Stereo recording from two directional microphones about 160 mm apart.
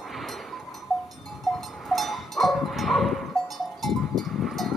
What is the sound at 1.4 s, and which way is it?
Sheep, centre (ahead or behind).